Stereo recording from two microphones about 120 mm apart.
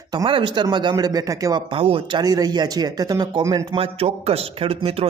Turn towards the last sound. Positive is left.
turn(degrees=-55)  # may be behind; listen again after turning